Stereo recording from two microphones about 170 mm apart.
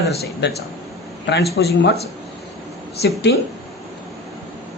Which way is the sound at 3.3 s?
90° left.